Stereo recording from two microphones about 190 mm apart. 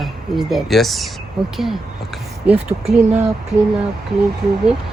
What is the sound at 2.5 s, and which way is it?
Speech, 5° right (ahead or behind).